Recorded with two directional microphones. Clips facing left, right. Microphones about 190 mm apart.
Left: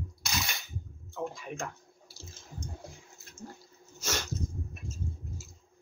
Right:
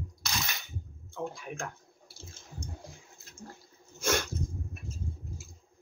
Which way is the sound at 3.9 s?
55° right (ahead or behind).